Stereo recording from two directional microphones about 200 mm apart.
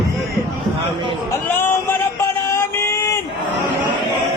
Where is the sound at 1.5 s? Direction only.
10° left (ahead or behind).